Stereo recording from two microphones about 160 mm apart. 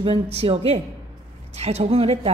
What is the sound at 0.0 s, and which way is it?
A woman's voice, 35° right (ahead or behind).